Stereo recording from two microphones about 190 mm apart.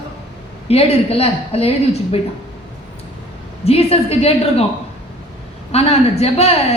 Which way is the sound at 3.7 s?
30° left (ahead or behind).